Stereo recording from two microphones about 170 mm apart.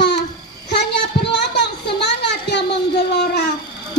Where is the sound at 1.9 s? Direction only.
85° left.